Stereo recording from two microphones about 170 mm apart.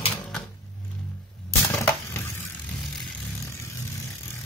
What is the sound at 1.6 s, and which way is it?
Crushing, 15° left (ahead or behind).